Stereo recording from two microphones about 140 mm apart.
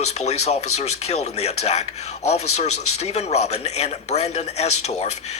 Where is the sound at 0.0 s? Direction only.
50° left (ahead or behind).